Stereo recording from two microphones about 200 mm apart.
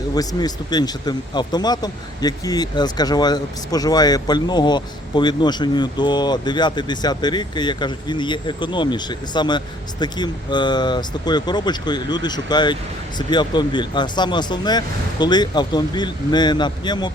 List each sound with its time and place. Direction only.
0.1 s speech: 20° left (ahead or behind)